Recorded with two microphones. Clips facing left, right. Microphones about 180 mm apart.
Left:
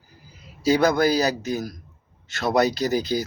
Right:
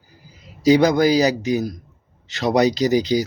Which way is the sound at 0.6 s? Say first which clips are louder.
Right 4 dB; 15° right (ahead or behind).